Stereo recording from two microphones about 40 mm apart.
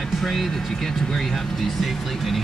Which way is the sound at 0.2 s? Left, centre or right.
Centre.